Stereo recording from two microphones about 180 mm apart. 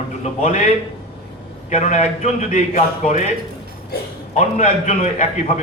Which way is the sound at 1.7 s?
40° left (ahead or behind).